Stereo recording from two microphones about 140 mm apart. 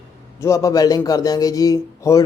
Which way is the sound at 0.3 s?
20° left (ahead or behind).